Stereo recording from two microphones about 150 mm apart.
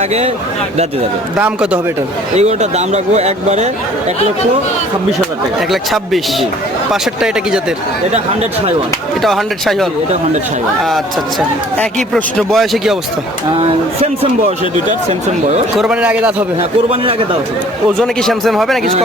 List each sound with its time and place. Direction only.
1.4 s a man's voice: 10° right (ahead or behind)
2.3 s speech: 50° right (ahead or behind)
5.5 s a man's voice: centre (ahead or behind)
9.2 s a man's voice: centre (ahead or behind)
13.6 s speech: 40° right (ahead or behind)
15.8 s a man's voice: 5° right (ahead or behind)
16.9 s speech: 40° right (ahead or behind)
18.0 s a man's voice: 5° left (ahead or behind)